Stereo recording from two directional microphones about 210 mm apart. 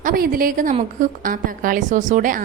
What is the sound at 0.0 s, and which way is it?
A woman's voice, 45° right (ahead or behind).